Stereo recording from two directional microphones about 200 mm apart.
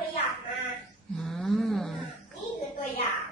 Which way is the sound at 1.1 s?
Centre (ahead or behind).